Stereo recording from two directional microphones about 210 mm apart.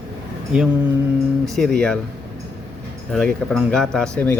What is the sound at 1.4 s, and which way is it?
Speech, centre (ahead or behind).